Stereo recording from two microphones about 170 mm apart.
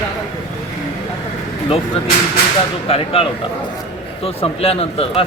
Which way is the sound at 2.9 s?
35° left (ahead or behind).